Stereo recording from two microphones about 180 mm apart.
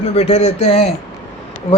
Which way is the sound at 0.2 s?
35° left (ahead or behind).